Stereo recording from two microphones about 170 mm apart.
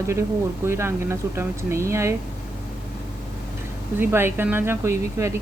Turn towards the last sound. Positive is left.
turn(degrees=-15)  # may be behind; listen again after turning